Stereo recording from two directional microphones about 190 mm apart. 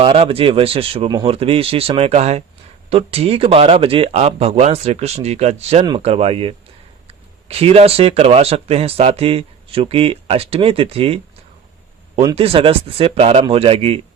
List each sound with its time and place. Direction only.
0.0 s speech: 30° right (ahead or behind)